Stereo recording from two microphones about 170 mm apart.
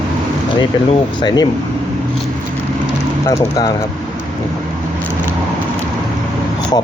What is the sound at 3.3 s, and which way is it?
Speech, 25° left (ahead or behind).